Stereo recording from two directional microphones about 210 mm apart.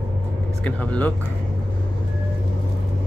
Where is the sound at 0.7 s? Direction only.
5° left (ahead or behind).